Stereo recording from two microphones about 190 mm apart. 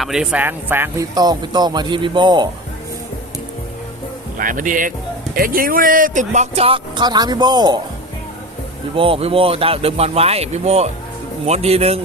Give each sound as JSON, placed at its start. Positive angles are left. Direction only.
{"t": 0.0, "sound": "speech", "side_deg": -5}
{"t": 4.4, "sound": "speech", "side_deg": -45}
{"t": 9.0, "sound": "speech", "side_deg": -30}